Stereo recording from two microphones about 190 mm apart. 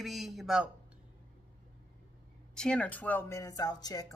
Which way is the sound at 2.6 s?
5° left (ahead or behind).